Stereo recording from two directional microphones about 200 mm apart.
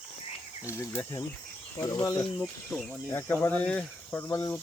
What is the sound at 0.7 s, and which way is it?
Speech, 15° left (ahead or behind).